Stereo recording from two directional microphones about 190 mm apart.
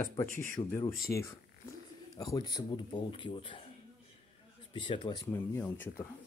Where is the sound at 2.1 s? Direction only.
20° left (ahead or behind).